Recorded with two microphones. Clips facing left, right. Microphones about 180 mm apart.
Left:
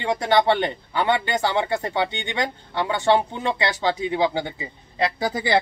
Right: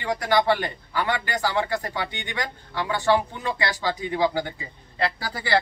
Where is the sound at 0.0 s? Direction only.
25° left (ahead or behind).